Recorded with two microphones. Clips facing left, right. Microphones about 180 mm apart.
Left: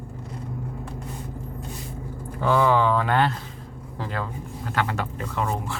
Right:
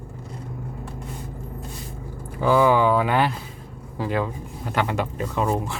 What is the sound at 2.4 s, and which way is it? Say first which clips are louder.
Speech: right 2 dB; 10° right (ahead or behind).